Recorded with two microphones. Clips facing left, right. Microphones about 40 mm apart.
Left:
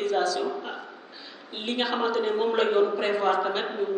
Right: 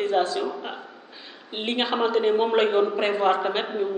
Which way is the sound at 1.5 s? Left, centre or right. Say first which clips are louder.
Right 3 dB; right.